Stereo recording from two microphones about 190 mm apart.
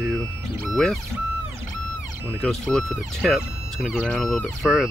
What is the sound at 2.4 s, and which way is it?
Speech, centre (ahead or behind).